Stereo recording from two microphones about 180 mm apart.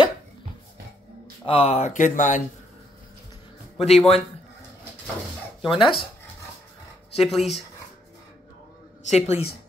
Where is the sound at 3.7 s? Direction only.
35° left (ahead or behind).